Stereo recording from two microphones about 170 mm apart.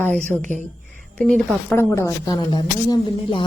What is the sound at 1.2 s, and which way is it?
Speech, 5° left (ahead or behind).